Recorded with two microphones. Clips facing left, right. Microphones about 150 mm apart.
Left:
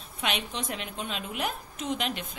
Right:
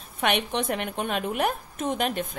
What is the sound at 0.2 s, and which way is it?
A woman's voice, 60° right (ahead or behind).